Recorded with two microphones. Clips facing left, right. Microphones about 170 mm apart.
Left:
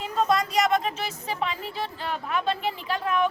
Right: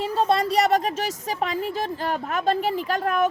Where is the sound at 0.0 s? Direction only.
30° right (ahead or behind).